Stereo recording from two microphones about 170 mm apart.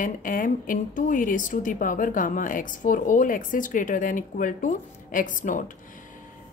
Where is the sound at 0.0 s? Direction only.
55° left (ahead or behind).